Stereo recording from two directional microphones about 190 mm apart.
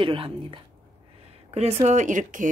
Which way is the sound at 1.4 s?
35° right (ahead or behind).